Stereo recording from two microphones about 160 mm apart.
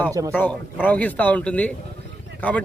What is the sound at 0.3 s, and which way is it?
Speech, 10° left (ahead or behind).